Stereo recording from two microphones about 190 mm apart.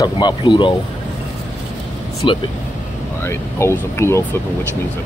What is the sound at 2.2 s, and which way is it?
Speech, 25° left (ahead or behind).